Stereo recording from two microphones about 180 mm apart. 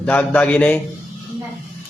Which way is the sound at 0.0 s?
10° left (ahead or behind).